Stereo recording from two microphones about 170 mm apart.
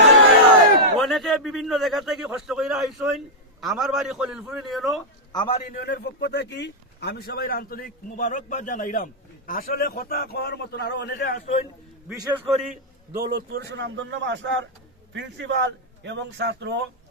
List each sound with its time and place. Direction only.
0.9 s a man's voice: centre (ahead or behind)
5.3 s a man's voice: 25° left (ahead or behind)
5.7 s speech: 75° left (ahead or behind)
11.2 s speech: 60° left (ahead or behind)
12.0 s a man's voice: 10° right (ahead or behind)
13.1 s a man's voice: 65° right (ahead or behind); by 16.8 s 90° right